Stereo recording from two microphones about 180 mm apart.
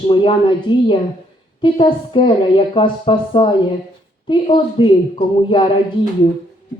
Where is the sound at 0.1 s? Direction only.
30° left (ahead or behind).